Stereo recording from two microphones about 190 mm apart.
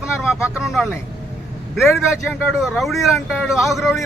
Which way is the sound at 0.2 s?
15° left (ahead or behind).